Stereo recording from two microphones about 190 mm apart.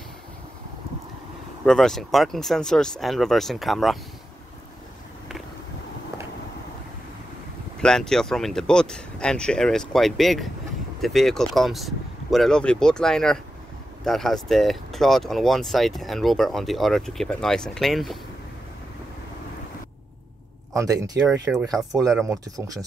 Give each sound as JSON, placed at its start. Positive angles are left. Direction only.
{"t": 1.6, "sound": "speech", "side_deg": 0}
{"t": 7.8, "sound": "speech", "side_deg": 5}
{"t": 20.7, "sound": "speech", "side_deg": -15}
{"t": 21.3, "sound": "speech", "side_deg": -5}
{"t": 22.2, "sound": "speech", "side_deg": -15}